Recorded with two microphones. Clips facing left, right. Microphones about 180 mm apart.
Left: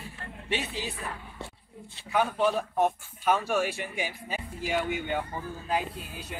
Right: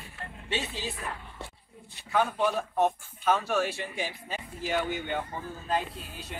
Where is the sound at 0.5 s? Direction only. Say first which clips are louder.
Left 1 dB; 15° left (ahead or behind).